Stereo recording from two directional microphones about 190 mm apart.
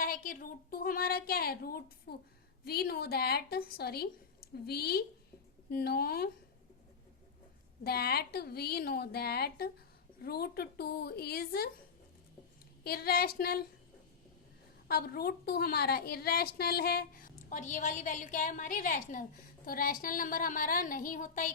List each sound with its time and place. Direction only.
0.0 s a woman's voice: 45° left (ahead or behind)
7.9 s a woman's voice: 55° left (ahead or behind)
12.8 s a woman's voice: 55° left (ahead or behind)
14.8 s a woman's voice: 55° left (ahead or behind)